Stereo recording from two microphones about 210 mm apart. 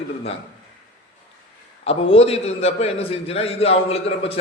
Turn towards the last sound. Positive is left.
turn(degrees=30)  # may be behind; listen again after turning